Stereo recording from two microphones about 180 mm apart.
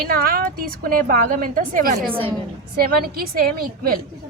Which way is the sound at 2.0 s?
30° right (ahead or behind).